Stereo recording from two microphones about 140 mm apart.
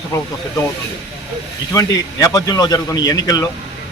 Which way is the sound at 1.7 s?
25° left (ahead or behind).